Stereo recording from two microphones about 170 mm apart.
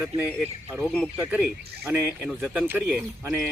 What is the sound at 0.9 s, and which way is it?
Speech, centre (ahead or behind).